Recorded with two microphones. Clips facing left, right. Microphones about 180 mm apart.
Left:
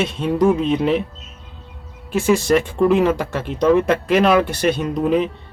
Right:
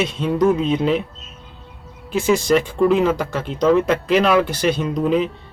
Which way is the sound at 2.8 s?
55° left (ahead or behind).